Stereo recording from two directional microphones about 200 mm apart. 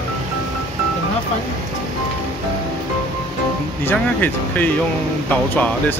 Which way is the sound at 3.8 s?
10° left (ahead or behind).